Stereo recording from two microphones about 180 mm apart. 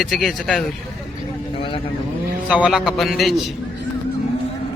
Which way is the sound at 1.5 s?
30° left (ahead or behind).